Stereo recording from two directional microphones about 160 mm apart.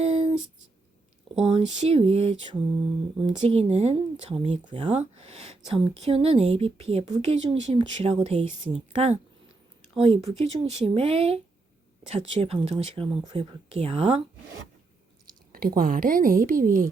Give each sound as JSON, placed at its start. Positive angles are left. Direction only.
{"t": 0.0, "sound": "a sound", "side_deg": -40}
{"t": 1.4, "sound": "speech", "side_deg": -40}
{"t": 15.5, "sound": "a woman's voice", "side_deg": -65}